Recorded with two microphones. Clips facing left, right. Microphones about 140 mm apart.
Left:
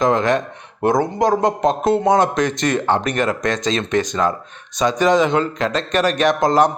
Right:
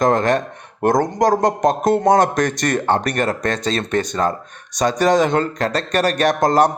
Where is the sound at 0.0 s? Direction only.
45° right (ahead or behind).